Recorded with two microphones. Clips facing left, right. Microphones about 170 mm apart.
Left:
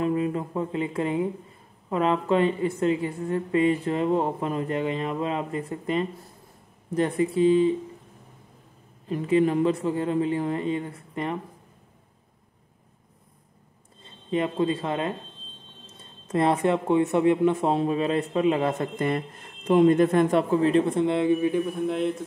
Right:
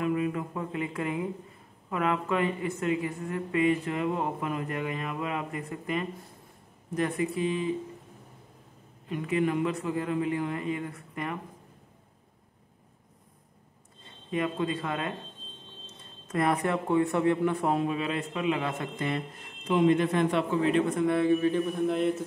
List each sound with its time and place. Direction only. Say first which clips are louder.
0.0 s a woman's voice: left 3 dB; 30° left (ahead or behind)
9.1 s a woman's voice: left 6 dB; 30° left (ahead or behind)
14.3 s a woman's voice: left 5 dB; 25° left (ahead or behind)
16.3 s speech: left 5 dB; 25° left (ahead or behind)
21.8 s a man's voice: left 1 dB; centre (ahead or behind)